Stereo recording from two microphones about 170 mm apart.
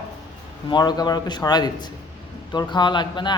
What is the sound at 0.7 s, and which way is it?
Speech, 25° left (ahead or behind).